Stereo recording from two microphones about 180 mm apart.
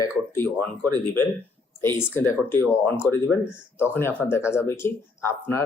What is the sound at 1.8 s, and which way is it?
Speech, 10° left (ahead or behind).